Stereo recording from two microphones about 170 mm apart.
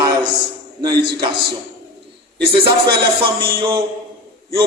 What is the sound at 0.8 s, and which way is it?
Speech, 25° right (ahead or behind).